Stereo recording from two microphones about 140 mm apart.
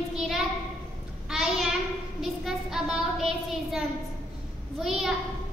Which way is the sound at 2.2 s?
5° right (ahead or behind).